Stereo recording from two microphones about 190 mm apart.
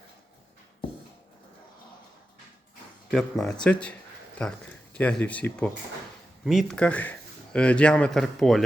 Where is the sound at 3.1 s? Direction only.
Centre (ahead or behind).